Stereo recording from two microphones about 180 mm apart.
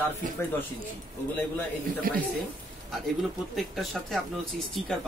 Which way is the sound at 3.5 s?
Centre (ahead or behind).